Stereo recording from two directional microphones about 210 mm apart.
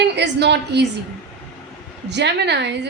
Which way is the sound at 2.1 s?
55° right (ahead or behind).